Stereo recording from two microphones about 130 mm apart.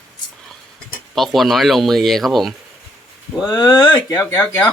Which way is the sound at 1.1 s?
Centre (ahead or behind).